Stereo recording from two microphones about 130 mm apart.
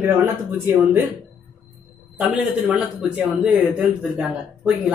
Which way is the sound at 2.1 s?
10° right (ahead or behind).